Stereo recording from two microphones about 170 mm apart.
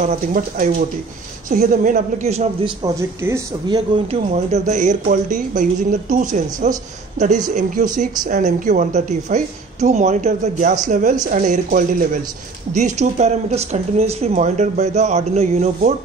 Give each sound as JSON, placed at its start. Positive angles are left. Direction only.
{"t": 0.0, "sound": "a woman's voice", "side_deg": -50}
{"t": 2.8, "sound": "speech", "side_deg": -15}
{"t": 3.6, "sound": "speech", "side_deg": -30}
{"t": 4.3, "sound": "a woman's voice", "side_deg": -45}